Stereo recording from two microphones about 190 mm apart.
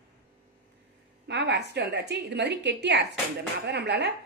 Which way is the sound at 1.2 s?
65° right (ahead or behind).